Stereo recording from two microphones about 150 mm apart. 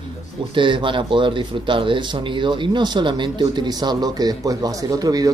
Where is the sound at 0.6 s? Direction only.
35° right (ahead or behind).